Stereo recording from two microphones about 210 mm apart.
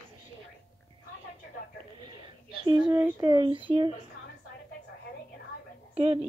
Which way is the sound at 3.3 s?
20° right (ahead or behind).